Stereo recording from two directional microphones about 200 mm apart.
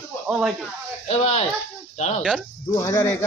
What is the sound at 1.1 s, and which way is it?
Speech, 30° left (ahead or behind).